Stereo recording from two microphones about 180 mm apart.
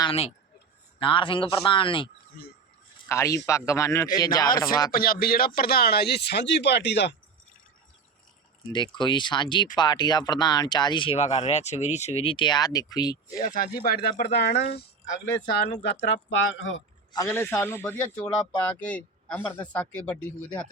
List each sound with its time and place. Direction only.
0.0 s speech: 30° left (ahead or behind)
3.1 s speech: 15° left (ahead or behind)
4.9 s speech: 55° left (ahead or behind); by 7.2 s 75° left (ahead or behind)
8.7 s speech: 25° left (ahead or behind)
13.4 s speech: 50° left (ahead or behind); by 16.8 s 90° left
17.1 s speech: 15° left (ahead or behind)